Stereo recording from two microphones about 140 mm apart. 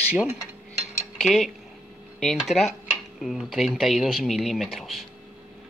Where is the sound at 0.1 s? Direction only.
10° right (ahead or behind).